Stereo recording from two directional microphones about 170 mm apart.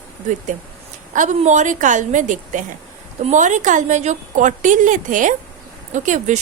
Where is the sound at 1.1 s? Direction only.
45° right (ahead or behind).